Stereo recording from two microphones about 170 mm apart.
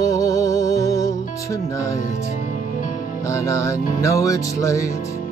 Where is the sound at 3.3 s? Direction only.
15° left (ahead or behind).